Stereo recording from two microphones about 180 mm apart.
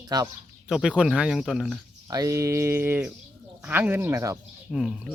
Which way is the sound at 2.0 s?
20° right (ahead or behind).